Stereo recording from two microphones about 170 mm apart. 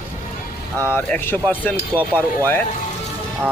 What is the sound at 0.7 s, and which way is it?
Speech, 10° left (ahead or behind).